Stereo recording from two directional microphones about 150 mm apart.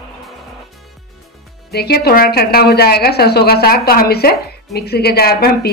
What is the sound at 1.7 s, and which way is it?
A woman's voice, 90° left.